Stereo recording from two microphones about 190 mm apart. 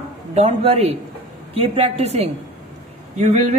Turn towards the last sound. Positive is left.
turn(degrees=-40)  # may be behind; listen again after turning